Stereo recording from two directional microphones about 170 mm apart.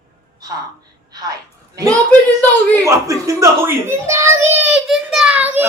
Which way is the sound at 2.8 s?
20° right (ahead or behind).